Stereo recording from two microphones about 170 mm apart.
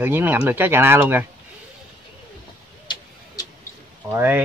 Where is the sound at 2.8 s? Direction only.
25° left (ahead or behind).